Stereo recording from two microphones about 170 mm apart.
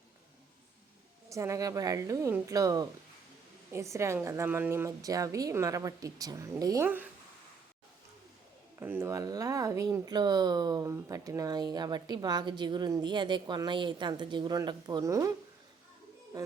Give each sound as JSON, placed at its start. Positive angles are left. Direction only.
{"t": 1.3, "sound": "a woman's voice", "side_deg": -20}
{"t": 8.8, "sound": "speech", "side_deg": -15}